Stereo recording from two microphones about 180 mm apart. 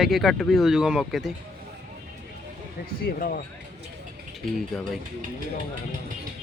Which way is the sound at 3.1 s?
55° left (ahead or behind).